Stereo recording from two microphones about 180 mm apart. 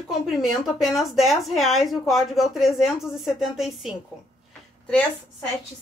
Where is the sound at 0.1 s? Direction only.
Centre (ahead or behind).